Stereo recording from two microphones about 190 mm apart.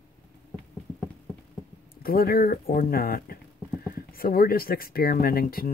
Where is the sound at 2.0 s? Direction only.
50° left (ahead or behind).